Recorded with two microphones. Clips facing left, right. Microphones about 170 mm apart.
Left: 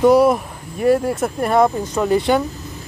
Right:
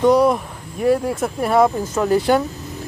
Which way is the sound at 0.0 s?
5° left (ahead or behind).